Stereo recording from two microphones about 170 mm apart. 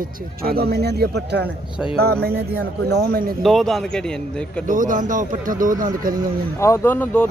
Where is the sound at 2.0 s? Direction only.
65° right (ahead or behind).